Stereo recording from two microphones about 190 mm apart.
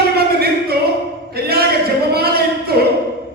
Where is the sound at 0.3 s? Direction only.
55° right (ahead or behind).